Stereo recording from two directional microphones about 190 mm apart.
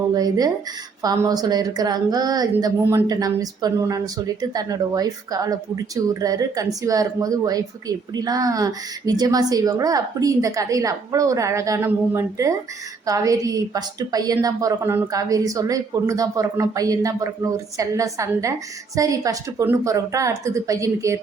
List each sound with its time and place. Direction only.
0.1 s a woman's voice: 20° right (ahead or behind)